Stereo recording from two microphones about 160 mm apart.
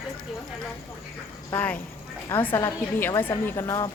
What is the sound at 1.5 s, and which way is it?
A woman's voice, 10° left (ahead or behind).